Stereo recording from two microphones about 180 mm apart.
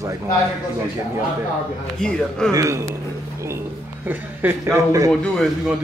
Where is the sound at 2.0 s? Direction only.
5° left (ahead or behind).